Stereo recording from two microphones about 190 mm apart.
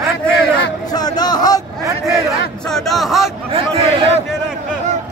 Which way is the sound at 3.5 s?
30° right (ahead or behind).